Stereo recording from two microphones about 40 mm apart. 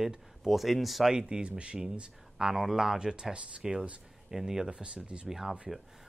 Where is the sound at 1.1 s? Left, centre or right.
Centre.